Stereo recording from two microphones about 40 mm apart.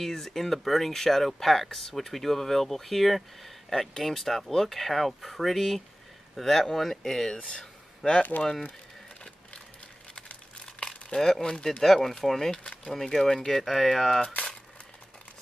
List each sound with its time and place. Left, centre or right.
0.0 s speech: centre
7.4 s a sound: centre
11.1 s speech: centre